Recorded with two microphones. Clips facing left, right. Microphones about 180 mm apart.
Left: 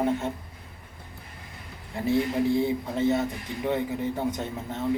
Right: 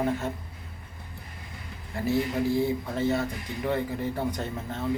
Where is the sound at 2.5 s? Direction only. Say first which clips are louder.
Left 1 dB; 20° left (ahead or behind).